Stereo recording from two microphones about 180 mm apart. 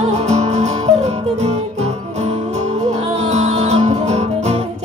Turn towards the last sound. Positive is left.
turn(degrees=-35)  # may be behind; listen again after turning